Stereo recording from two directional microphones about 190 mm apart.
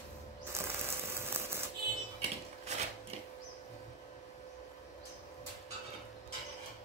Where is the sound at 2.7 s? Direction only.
35° right (ahead or behind).